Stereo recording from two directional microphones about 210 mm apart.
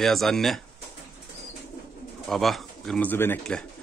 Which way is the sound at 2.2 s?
Centre (ahead or behind).